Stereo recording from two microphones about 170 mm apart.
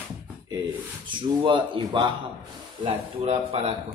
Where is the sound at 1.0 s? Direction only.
30° right (ahead or behind).